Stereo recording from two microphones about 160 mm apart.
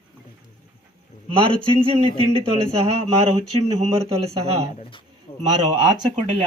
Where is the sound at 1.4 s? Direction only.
35° right (ahead or behind).